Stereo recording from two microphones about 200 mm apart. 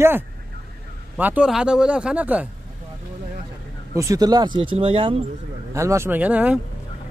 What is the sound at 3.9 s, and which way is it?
A man's voice, 15° right (ahead or behind).